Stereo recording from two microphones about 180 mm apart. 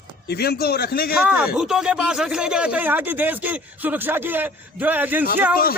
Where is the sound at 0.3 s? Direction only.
60° left (ahead or behind).